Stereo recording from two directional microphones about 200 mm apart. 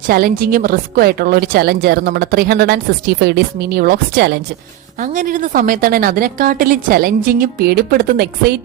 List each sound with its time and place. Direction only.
0.1 s a woman's voice: 50° right (ahead or behind)
5.1 s a woman's voice: 40° right (ahead or behind)